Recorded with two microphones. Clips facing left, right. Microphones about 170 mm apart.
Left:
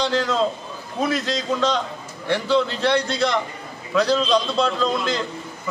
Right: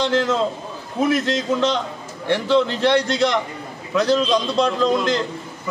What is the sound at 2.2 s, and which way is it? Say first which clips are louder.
A man's voice: right 2 dB; 20° right (ahead or behind).